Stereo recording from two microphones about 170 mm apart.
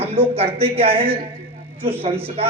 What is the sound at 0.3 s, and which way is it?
Speech, 35° right (ahead or behind).